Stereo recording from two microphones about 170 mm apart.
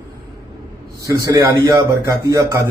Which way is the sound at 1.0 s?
20° right (ahead or behind).